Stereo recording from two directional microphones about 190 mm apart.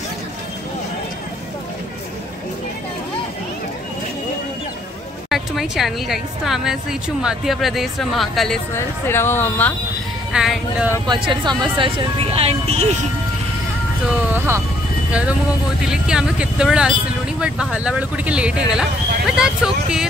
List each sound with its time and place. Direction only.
5.3 s a woman's voice: centre (ahead or behind)
8.7 s speech: 15° left (ahead or behind)
10.3 s a woman's voice: 5° right (ahead or behind)
11.1 s speech: 25° right (ahead or behind)
14.3 s a woman's voice: 10° right (ahead or behind)